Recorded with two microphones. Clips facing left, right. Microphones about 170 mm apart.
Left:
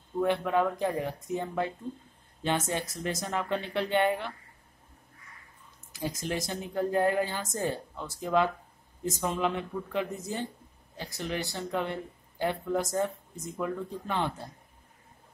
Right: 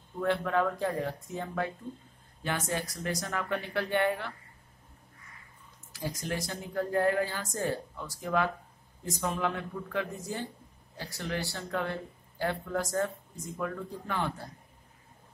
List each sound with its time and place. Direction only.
0.2 s speech: 15° left (ahead or behind)
5.9 s speech: 20° left (ahead or behind)